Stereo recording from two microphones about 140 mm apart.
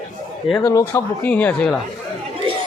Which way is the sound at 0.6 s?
25° left (ahead or behind).